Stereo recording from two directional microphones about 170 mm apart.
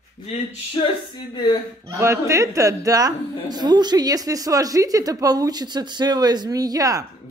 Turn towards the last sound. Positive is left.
turn(degrees=-20)  # may be behind; listen again after turning